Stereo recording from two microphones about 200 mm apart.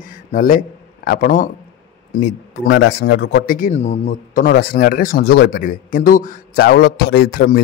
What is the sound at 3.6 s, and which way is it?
Speech, 35° left (ahead or behind).